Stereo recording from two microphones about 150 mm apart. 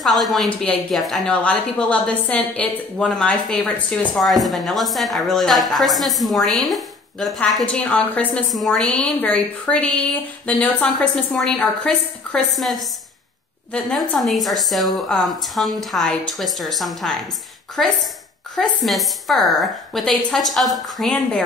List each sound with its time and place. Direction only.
0.0 s a woman's voice: centre (ahead or behind)